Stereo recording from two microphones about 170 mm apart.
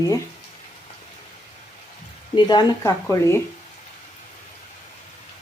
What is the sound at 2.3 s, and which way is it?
Speech, 25° left (ahead or behind).